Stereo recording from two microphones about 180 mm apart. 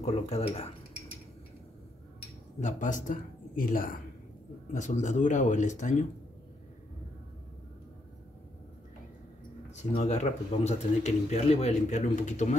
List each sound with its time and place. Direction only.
0.0 s speech: 35° left (ahead or behind)
2.6 s speech: 45° left (ahead or behind)
9.8 s speech: 40° left (ahead or behind)